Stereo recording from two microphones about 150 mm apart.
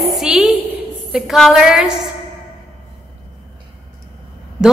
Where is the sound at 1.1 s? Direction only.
Centre (ahead or behind).